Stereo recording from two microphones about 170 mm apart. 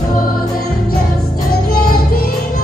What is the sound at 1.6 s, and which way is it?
Music, 60° left (ahead or behind).